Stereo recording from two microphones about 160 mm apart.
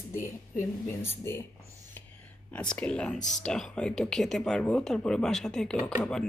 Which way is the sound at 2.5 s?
5° left (ahead or behind).